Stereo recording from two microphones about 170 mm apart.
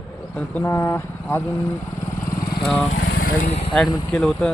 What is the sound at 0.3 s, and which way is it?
Speech, 10° left (ahead or behind).